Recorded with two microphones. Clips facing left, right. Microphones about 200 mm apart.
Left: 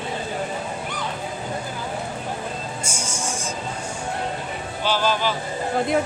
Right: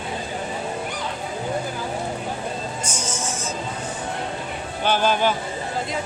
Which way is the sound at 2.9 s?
10° left (ahead or behind).